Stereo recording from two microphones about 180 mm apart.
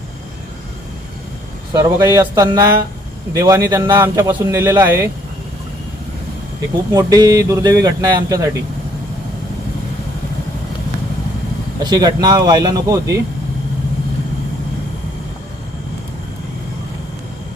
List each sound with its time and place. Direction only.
1.7 s speech: 20° right (ahead or behind)
6.9 s speech: 20° right (ahead or behind)
11.8 s speech: 20° right (ahead or behind)